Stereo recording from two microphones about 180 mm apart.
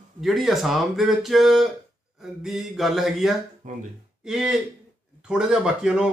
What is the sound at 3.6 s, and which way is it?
Speech, 45° right (ahead or behind).